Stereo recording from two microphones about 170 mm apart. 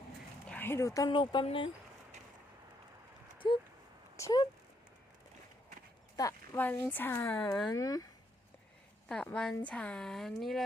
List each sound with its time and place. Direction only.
0.5 s speech: 15° left (ahead or behind); by 1.7 s 30° left (ahead or behind)
3.4 s speech: 30° left (ahead or behind)
6.1 s speech: 20° left (ahead or behind)
9.0 s speech: 5° left (ahead or behind)